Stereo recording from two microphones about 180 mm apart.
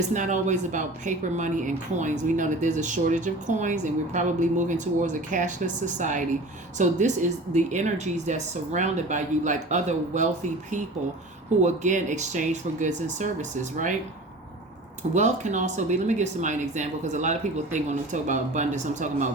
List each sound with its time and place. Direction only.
0.1 s a woman's voice: 45° right (ahead or behind)
11.6 s a woman's voice: 40° right (ahead or behind)
15.1 s speech: 40° right (ahead or behind)